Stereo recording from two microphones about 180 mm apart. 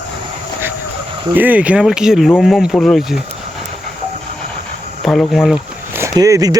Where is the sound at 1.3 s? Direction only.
10° right (ahead or behind).